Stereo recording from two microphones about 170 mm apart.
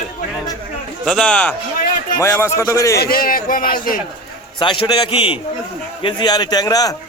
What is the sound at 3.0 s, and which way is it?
Speech, 60° left (ahead or behind).